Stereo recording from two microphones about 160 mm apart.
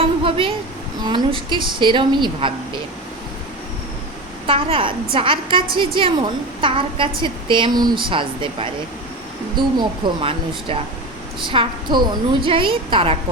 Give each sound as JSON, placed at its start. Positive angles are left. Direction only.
{"t": 0.0, "sound": "a sound", "side_deg": -35}
{"t": 1.0, "sound": "a woman's voice", "side_deg": -30}
{"t": 4.4, "sound": "a woman's voice", "side_deg": -35}